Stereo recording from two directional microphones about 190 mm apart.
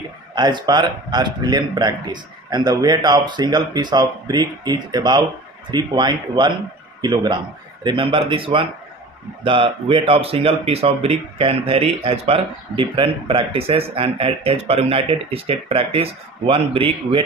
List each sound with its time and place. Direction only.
0.3 s speech: 20° right (ahead or behind)